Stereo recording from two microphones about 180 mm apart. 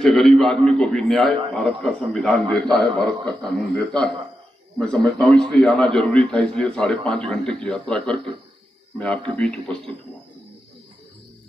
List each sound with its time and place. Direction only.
0.0 s a man's voice: centre (ahead or behind)